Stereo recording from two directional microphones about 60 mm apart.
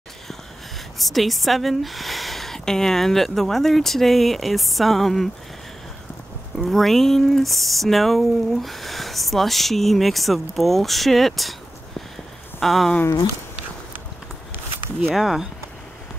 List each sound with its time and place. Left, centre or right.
0.9 s speech: centre
6.6 s speech: centre
12.5 s a sound: centre
15.0 s speech: centre